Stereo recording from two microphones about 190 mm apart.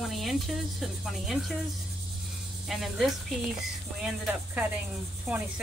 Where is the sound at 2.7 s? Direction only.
Centre (ahead or behind).